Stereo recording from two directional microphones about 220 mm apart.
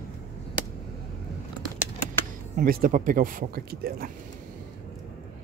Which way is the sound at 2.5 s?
40° right (ahead or behind).